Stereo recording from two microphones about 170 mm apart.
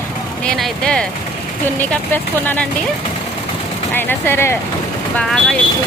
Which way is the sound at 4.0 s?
10° left (ahead or behind).